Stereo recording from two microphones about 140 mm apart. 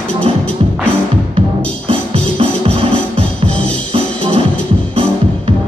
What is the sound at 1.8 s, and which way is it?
Music, 40° right (ahead or behind).